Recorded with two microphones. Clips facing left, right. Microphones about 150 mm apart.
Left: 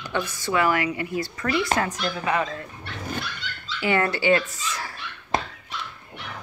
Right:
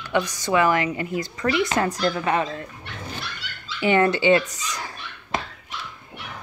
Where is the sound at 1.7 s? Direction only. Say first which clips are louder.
Right 4 dB; 35° right (ahead or behind).